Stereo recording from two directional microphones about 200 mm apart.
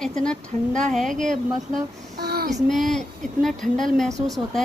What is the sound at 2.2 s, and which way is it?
Child singing, 50° right (ahead or behind).